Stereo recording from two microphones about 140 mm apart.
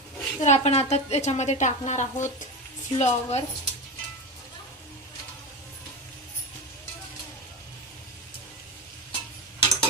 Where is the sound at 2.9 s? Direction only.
50° left (ahead or behind).